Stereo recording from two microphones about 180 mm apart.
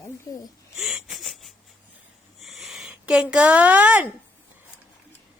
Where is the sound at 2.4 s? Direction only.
Centre (ahead or behind).